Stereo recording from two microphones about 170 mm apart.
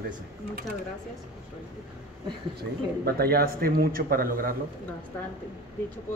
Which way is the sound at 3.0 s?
65° right (ahead or behind).